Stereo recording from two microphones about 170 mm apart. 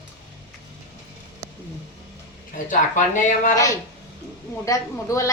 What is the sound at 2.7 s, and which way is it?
Speech, 45° left (ahead or behind).